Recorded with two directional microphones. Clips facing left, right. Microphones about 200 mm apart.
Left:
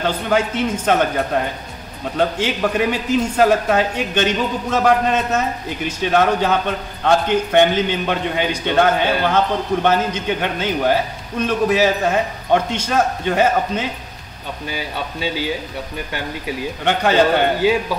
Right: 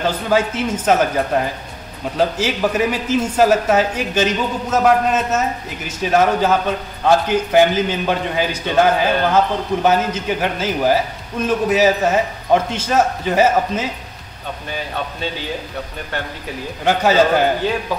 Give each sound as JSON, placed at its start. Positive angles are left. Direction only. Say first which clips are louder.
{"t": 0.0, "sound": "a man's voice", "louder": "right 1 dB", "side_deg": -5}
{"t": 16.8, "sound": "a man's voice", "louder": "right 1 dB", "side_deg": 0}